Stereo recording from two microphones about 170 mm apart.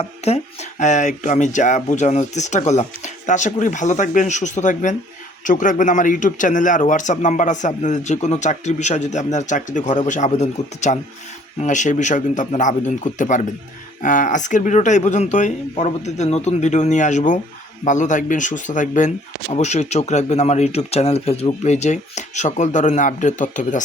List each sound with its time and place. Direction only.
0.2 s a man's voice: 40° left (ahead or behind)